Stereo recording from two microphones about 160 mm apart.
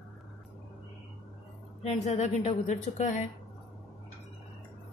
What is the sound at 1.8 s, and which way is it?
A woman's voice, 40° left (ahead or behind).